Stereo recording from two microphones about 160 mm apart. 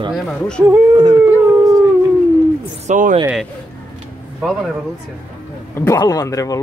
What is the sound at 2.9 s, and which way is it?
Speech, 55° right (ahead or behind).